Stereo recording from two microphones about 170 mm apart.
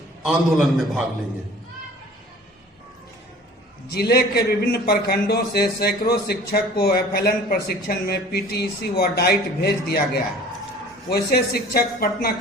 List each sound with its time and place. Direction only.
0.3 s a man's voice: centre (ahead or behind)
3.9 s a man's voice: 65° left (ahead or behind)
11.1 s a man's voice: 65° left (ahead or behind)